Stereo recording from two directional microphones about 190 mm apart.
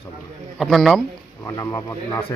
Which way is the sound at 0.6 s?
Centre (ahead or behind).